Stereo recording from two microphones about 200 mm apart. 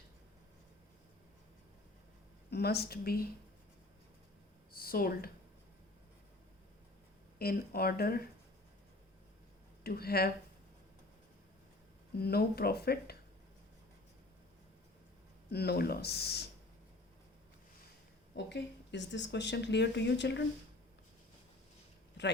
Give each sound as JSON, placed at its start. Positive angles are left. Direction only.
{"t": 2.5, "sound": "speech", "side_deg": 55}
{"t": 4.7, "sound": "a sound", "side_deg": 45}
{"t": 7.3, "sound": "speech", "side_deg": 50}
{"t": 9.8, "sound": "speech", "side_deg": 50}
{"t": 12.1, "sound": "speech", "side_deg": 50}
{"t": 15.4, "sound": "speech", "side_deg": 55}
{"t": 18.3, "sound": "speech", "side_deg": 60}